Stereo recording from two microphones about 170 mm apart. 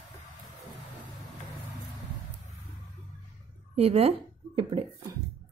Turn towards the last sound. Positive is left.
turn(degrees=-30)  # may be behind; listen again after turning